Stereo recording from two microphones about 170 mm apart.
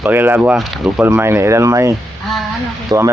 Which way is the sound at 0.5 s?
Centre (ahead or behind).